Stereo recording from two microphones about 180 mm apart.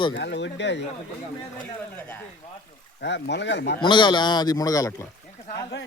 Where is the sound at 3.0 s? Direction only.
75° left (ahead or behind).